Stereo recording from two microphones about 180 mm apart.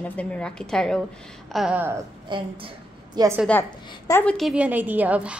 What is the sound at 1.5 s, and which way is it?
Speech, 5° right (ahead or behind).